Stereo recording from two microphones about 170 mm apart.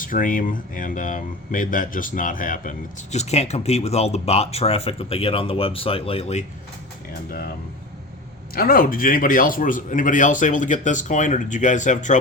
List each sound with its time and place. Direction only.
0.0 s speech: 50° left (ahead or behind); by 6.4 s 35° left (ahead or behind)
7.3 s speech: 60° left (ahead or behind)
8.5 s speech: 60° left (ahead or behind)